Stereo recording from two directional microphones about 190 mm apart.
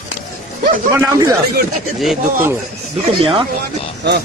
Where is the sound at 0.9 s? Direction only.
15° right (ahead or behind).